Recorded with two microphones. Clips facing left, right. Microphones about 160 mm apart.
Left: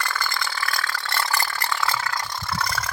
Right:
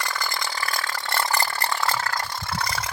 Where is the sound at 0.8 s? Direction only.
20° right (ahead or behind).